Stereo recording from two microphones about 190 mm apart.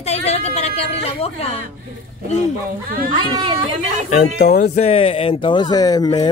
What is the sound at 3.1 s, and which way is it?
Speech, 25° right (ahead or behind).